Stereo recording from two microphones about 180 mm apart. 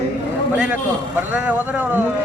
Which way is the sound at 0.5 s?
5° right (ahead or behind).